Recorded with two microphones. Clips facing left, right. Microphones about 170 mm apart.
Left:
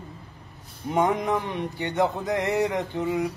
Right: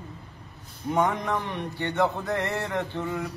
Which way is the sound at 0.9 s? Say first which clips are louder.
Left 2 dB; 20° left (ahead or behind).